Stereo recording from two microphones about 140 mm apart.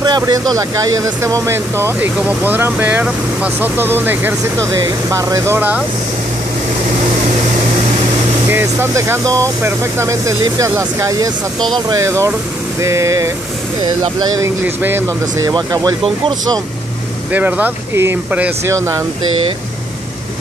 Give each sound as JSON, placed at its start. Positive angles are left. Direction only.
{"t": 0.0, "sound": "speech", "side_deg": -30}
{"t": 8.5, "sound": "speech", "side_deg": -15}
{"t": 14.6, "sound": "speech", "side_deg": -15}
{"t": 15.5, "sound": "speech", "side_deg": -30}
{"t": 17.3, "sound": "speech", "side_deg": -10}